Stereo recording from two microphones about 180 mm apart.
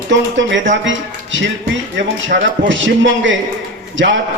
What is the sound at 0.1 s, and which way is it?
A man's voice, 90° right.